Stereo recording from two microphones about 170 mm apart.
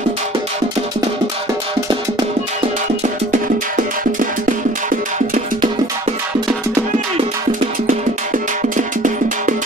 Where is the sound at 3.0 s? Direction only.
50° right (ahead or behind).